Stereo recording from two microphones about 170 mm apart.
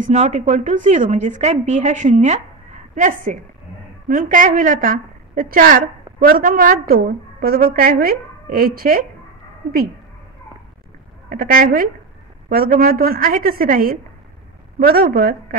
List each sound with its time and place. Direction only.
0.0 s a woman's voice: 45° right (ahead or behind); by 9.0 s 60° right (ahead or behind)
11.2 s a woman's voice: 55° right (ahead or behind)